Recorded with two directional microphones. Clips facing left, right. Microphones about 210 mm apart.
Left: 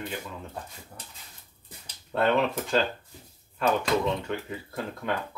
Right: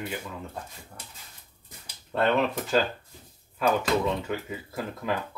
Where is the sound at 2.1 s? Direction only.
Centre (ahead or behind).